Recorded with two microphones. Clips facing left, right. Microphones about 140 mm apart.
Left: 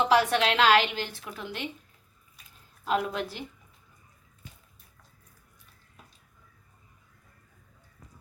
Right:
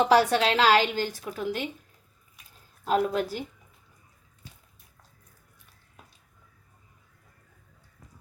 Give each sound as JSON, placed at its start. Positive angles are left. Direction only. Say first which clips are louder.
{"t": 0.0, "sound": "a woman's voice", "louder": "right 2 dB", "side_deg": -35}
{"t": 2.8, "sound": "a woman's voice", "louder": "right 4 dB", "side_deg": -40}